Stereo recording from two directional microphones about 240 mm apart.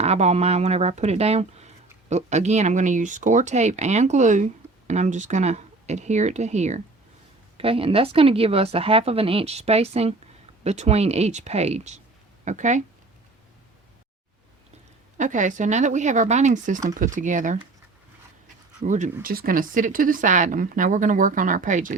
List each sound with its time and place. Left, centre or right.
0.0 s speech: right
15.2 s speech: right
18.9 s speech: right